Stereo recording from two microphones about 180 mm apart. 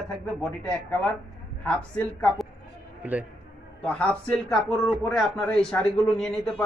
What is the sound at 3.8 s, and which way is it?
Speech, 5° left (ahead or behind).